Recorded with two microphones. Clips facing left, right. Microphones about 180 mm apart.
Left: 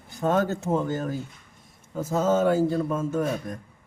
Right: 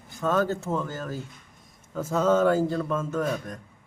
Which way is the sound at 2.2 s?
10° left (ahead or behind).